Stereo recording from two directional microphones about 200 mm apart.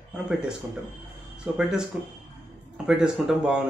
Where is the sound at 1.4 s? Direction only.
5° right (ahead or behind).